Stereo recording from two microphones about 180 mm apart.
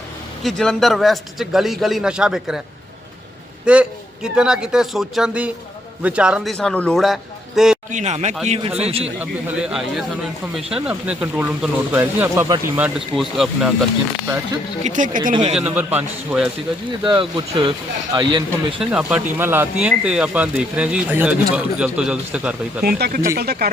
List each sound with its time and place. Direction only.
0.4 s speech: 5° left (ahead or behind)
3.7 s speech: 5° right (ahead or behind)
7.9 s speech: 40° right (ahead or behind)
9.1 s speech: 5° right (ahead or behind)
14.8 s speech: 45° right (ahead or behind)
15.5 s speech: 10° right (ahead or behind)
17.1 s speech: 20° right (ahead or behind)
18.8 s speech: 5° right (ahead or behind)
22.8 s speech: 55° right (ahead or behind)